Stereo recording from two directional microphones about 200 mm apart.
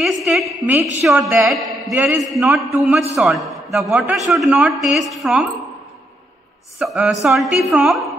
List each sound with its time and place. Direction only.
0.0 s a woman's voice: centre (ahead or behind)
6.8 s a man's voice: centre (ahead or behind)